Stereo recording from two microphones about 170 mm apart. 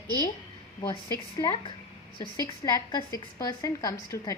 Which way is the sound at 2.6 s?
20° left (ahead or behind).